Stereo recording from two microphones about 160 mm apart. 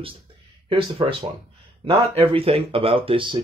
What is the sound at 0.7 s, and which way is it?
Speech, 35° right (ahead or behind).